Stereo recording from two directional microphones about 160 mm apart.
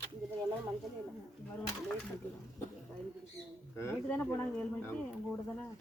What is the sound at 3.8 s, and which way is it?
Speech, 10° left (ahead or behind).